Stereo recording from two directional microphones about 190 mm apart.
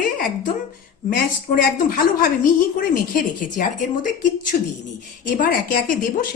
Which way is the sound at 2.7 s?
50° left (ahead or behind).